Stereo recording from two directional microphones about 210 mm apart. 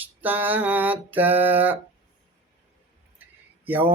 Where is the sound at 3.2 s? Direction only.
10° right (ahead or behind).